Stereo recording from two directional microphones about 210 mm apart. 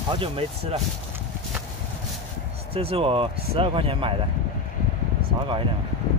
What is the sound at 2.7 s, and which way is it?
Speech, 25° right (ahead or behind).